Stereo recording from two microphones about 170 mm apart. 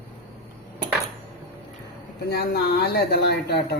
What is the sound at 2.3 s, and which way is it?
Speech, 70° left (ahead or behind).